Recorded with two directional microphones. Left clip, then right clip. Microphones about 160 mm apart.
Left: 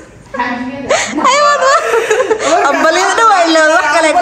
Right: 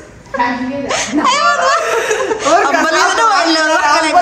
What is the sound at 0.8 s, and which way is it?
Laughter, 15° right (ahead or behind).